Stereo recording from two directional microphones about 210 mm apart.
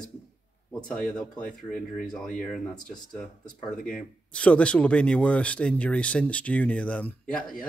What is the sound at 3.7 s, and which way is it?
Speech, 5° left (ahead or behind).